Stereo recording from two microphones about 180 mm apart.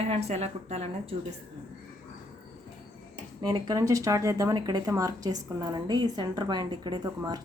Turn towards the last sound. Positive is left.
turn(degrees=-20)  # may be behind; listen again after turning